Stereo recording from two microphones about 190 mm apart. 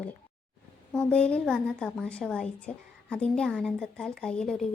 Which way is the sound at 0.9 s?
5° left (ahead or behind).